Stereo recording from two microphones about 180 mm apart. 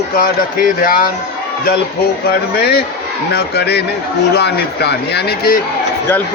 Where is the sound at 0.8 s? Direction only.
50° left (ahead or behind).